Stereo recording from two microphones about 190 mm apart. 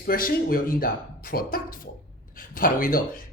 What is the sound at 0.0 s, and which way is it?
Speech, 50° left (ahead or behind).